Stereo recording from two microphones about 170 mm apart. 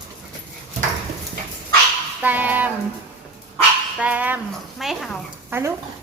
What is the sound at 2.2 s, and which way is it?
Speech, 10° right (ahead or behind).